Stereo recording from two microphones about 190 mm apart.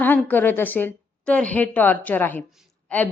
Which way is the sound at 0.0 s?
10° left (ahead or behind).